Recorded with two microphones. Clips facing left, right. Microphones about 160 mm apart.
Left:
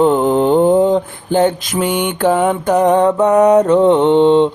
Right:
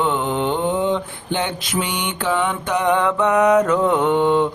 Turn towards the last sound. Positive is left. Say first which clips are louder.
# left 7 dB
turn(degrees=25)  # may be behind; listen again after turning